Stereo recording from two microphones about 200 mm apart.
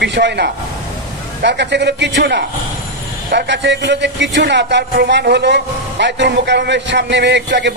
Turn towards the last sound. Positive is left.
turn(degrees=-60)  # may be behind; listen again after turning